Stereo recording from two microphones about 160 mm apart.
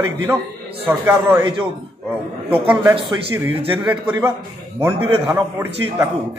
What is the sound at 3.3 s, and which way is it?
Speech, 15° right (ahead or behind).